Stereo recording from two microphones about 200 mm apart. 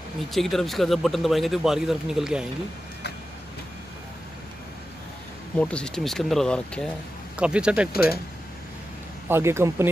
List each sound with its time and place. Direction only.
0.3 s a man's voice: centre (ahead or behind)
5.6 s a man's voice: 5° left (ahead or behind)
7.9 s speech: 50° left (ahead or behind)
9.3 s speech: 15° right (ahead or behind)